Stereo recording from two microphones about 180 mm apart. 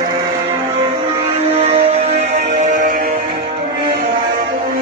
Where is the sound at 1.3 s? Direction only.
35° right (ahead or behind); by 3.0 s 50° right (ahead or behind).